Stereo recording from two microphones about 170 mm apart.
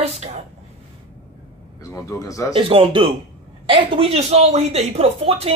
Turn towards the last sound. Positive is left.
turn(degrees=-35)  # may be behind; listen again after turning